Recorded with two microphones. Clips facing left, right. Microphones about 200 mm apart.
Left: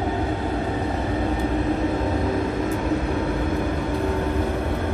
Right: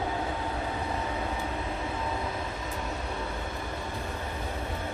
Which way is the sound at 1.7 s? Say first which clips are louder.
Left 10 dB; 45° left (ahead or behind).